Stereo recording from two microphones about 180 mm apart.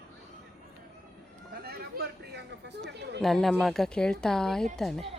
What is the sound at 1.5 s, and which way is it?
Speech, 60° right (ahead or behind).